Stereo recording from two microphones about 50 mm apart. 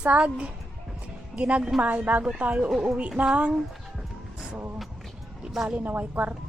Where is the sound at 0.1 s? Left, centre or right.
Right.